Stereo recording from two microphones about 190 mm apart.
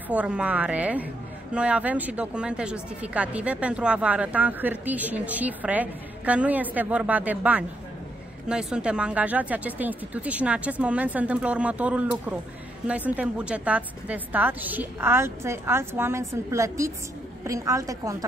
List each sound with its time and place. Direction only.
0.1 s speech: 5° right (ahead or behind)